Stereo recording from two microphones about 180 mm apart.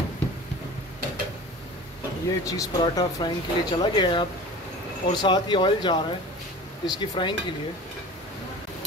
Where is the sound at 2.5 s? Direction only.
20° left (ahead or behind).